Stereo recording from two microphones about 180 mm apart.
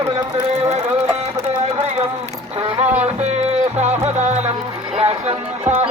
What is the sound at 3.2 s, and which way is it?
Music, 40° right (ahead or behind).